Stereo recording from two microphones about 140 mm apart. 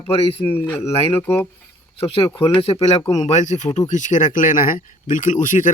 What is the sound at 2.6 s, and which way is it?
Speech, 45° left (ahead or behind).